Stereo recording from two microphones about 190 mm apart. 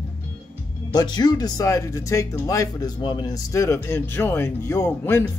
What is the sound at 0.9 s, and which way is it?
Speech, 20° left (ahead or behind).